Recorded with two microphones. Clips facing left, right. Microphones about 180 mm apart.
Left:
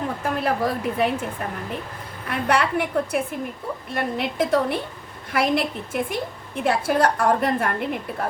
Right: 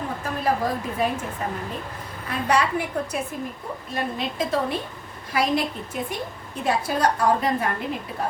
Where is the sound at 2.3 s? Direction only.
65° left (ahead or behind).